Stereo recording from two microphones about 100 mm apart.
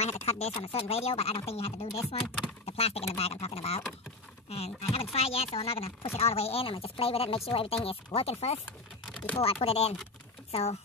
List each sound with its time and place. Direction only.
0.0 s speech: 90° left
1.5 s duck: 90° left
2.6 s a sound: 90° left
3.2 s duck: 90° left
4.5 s speech: 90° left
6.1 s speech: 90° left
9.1 s a sound: 15° left (ahead or behind)
9.4 s speech: 80° left